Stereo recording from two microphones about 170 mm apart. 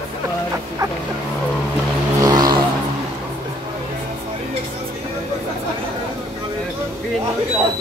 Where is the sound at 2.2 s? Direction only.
20° right (ahead or behind).